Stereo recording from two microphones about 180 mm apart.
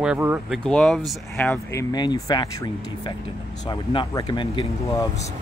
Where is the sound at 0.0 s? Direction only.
5° right (ahead or behind).